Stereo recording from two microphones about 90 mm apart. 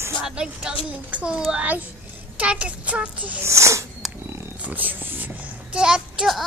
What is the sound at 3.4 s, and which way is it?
Speech, 35° right (ahead or behind).